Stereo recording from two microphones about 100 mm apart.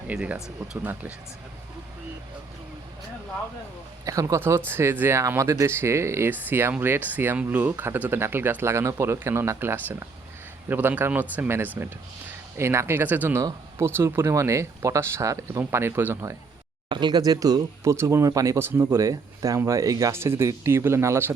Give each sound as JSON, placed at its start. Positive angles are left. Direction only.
{"t": 0.1, "sound": "speech", "side_deg": -15}
{"t": 4.0, "sound": "speech", "side_deg": -35}
{"t": 16.9, "sound": "speech", "side_deg": -45}